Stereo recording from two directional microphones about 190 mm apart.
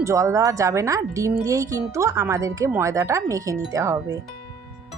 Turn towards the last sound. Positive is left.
turn(degrees=-15)  # may be behind; listen again after turning